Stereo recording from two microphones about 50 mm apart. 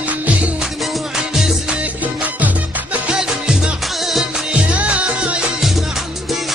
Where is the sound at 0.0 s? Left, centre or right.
Right.